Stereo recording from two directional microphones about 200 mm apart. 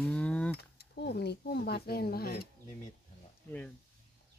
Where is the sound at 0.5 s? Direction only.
55° left (ahead or behind).